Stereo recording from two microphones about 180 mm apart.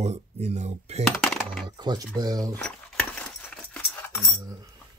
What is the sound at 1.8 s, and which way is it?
Speech, 20° right (ahead or behind).